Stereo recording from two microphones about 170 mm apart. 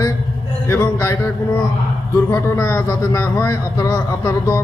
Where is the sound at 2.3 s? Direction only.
15° left (ahead or behind).